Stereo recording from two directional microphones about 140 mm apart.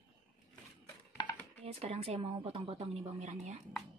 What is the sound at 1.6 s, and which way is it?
Speech, 45° right (ahead or behind).